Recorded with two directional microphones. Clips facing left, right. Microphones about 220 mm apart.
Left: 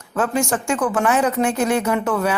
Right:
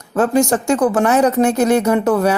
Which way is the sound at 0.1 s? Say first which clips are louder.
Right 6 dB; 40° right (ahead or behind).